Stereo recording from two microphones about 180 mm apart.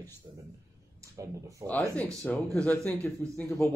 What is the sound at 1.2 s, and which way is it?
Speech, 20° right (ahead or behind).